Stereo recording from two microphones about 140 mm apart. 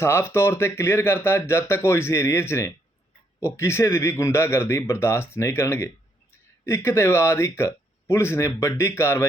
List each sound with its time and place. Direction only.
0.0 s speech: 15° left (ahead or behind)